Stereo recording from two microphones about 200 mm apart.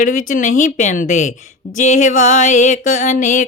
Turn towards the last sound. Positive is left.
turn(degrees=40)  # may be behind; listen again after turning